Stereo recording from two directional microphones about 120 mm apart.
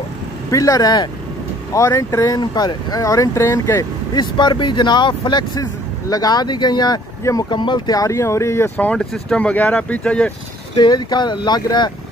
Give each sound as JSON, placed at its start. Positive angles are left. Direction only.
{"t": 0.5, "sound": "speech", "side_deg": 30}
{"t": 4.1, "sound": "speech", "side_deg": 40}
{"t": 8.7, "sound": "speech", "side_deg": 10}
{"t": 10.8, "sound": "speech", "side_deg": 35}